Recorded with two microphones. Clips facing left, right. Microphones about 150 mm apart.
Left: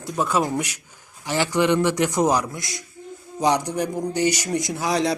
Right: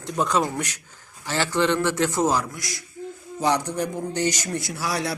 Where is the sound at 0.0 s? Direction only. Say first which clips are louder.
Left 1 dB; 5° left (ahead or behind).